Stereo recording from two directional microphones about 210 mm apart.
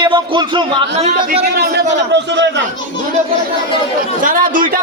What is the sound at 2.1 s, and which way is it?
Speech, 55° right (ahead or behind).